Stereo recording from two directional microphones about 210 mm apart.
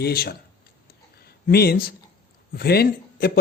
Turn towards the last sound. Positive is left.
turn(degrees=50)  # may be behind; listen again after turning